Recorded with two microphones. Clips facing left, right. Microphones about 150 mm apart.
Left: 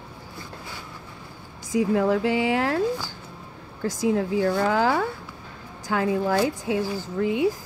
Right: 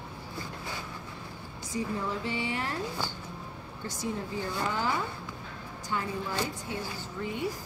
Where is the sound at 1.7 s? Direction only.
90° left.